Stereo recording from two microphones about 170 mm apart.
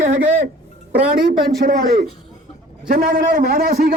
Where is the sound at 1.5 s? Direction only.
60° right (ahead or behind).